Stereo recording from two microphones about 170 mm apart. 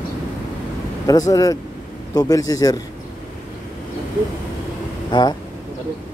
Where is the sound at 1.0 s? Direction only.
20° left (ahead or behind).